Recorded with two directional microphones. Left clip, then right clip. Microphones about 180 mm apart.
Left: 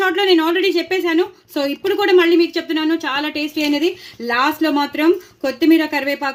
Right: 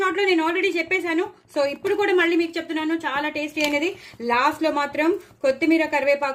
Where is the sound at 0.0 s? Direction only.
40° left (ahead or behind).